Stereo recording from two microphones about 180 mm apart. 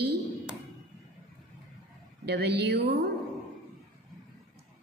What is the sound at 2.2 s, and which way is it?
Speech, 65° right (ahead or behind).